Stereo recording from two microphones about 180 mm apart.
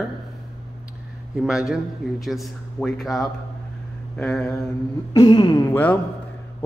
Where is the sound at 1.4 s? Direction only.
5° right (ahead or behind).